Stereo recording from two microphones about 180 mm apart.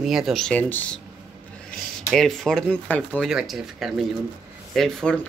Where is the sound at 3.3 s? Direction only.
5° right (ahead or behind).